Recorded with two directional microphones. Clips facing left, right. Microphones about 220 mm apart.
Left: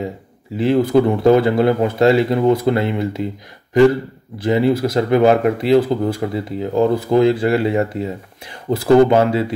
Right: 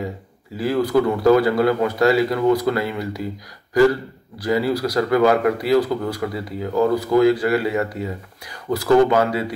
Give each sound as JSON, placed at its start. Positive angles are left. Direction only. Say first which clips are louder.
{"t": 0.6, "sound": "speech", "louder": "left 4 dB", "side_deg": 25}
{"t": 4.4, "sound": "speech", "louder": "left 4 dB", "side_deg": 25}